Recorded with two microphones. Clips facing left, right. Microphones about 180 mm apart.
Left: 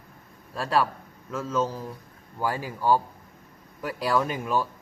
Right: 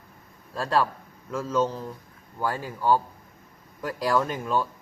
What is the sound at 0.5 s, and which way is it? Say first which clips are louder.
Speech: even; 5° left (ahead or behind).